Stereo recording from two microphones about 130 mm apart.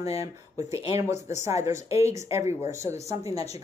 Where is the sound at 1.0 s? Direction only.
25° right (ahead or behind).